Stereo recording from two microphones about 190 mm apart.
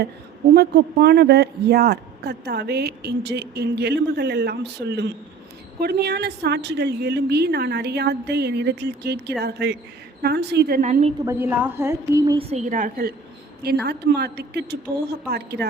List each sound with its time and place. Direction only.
0.5 s a man's voice: 55° right (ahead or behind)
10.8 s a woman's voice: 40° right (ahead or behind)
11.3 s a woman's voice: 10° right (ahead or behind)
12.4 s a woman's voice: 35° right (ahead or behind); by 15.6 s 60° right (ahead or behind)